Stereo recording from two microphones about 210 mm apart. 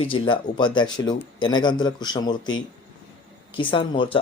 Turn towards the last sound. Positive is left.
turn(degrees=25)  # may be behind; listen again after turning